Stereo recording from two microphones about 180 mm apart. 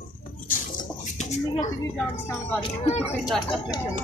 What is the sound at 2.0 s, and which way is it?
Speech, 15° left (ahead or behind).